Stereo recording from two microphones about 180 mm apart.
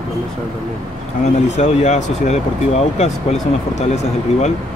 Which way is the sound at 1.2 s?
40° left (ahead or behind).